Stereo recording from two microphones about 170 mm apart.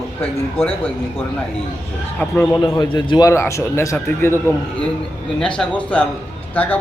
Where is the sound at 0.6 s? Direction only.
35° left (ahead or behind).